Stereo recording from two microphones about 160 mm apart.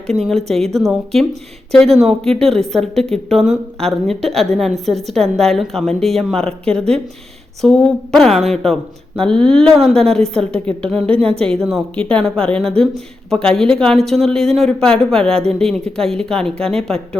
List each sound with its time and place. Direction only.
0.2 s a woman's voice: centre (ahead or behind)
11.1 s a woman's voice: 35° right (ahead or behind)
11.3 s a woman's voice: 5° left (ahead or behind)